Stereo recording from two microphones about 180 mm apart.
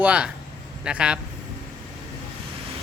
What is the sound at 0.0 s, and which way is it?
Speech, 5° right (ahead or behind).